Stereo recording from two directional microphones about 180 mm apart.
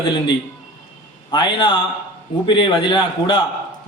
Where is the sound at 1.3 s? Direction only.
25° left (ahead or behind).